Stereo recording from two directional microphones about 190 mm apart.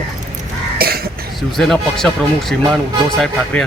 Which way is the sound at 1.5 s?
Centre (ahead or behind).